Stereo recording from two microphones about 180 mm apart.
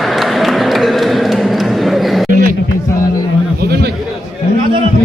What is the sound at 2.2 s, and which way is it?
Chatter, 45° right (ahead or behind).